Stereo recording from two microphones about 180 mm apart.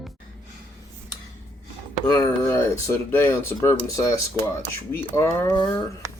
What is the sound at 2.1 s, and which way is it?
Speech, 15° left (ahead or behind).